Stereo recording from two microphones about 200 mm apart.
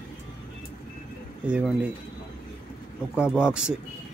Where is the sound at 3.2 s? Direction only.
5° right (ahead or behind).